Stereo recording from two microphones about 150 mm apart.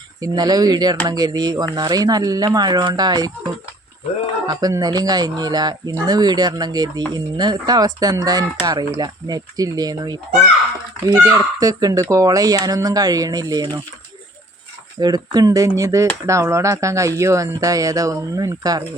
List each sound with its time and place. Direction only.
0.2 s speech: 25° right (ahead or behind)
4.4 s speech: 25° right (ahead or behind)
14.9 s speech: 25° right (ahead or behind)